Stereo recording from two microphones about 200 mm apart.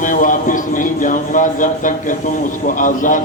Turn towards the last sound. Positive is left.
turn(degrees=40)  # may be behind; listen again after turning